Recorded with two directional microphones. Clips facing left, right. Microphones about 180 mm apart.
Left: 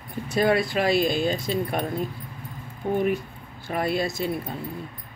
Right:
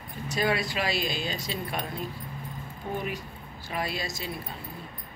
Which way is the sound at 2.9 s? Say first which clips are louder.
Left 10 dB; 55° left (ahead or behind).